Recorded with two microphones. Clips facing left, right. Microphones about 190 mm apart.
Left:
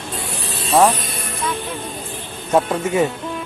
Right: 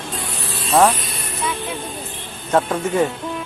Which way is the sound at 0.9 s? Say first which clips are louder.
Left 2 dB; 45° left (ahead or behind).